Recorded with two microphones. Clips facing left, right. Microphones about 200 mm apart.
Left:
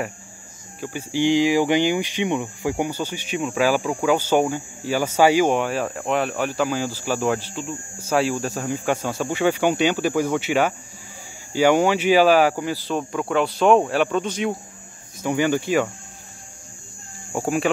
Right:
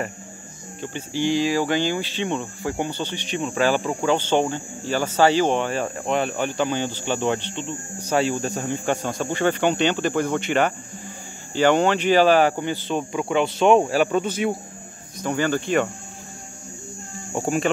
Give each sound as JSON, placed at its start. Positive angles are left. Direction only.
{"t": 0.7, "sound": "speech", "side_deg": 10}
{"t": 15.2, "sound": "speech", "side_deg": 15}